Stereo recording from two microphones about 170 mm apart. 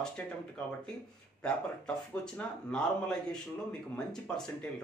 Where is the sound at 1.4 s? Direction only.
5° left (ahead or behind).